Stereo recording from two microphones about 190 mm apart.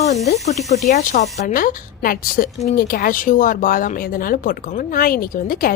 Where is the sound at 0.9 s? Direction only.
45° left (ahead or behind).